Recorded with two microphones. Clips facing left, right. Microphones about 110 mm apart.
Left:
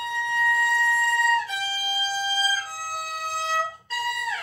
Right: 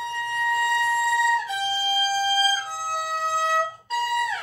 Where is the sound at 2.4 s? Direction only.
20° right (ahead or behind).